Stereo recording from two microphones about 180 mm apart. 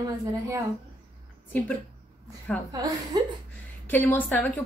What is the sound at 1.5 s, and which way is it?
Speech, 10° left (ahead or behind).